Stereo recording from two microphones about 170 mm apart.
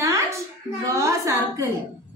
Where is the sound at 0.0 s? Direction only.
15° right (ahead or behind).